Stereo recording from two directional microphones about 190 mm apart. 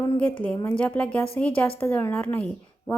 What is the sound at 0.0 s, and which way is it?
A woman's voice, 10° left (ahead or behind).